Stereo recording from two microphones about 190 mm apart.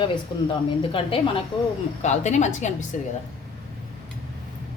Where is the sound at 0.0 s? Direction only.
25° left (ahead or behind).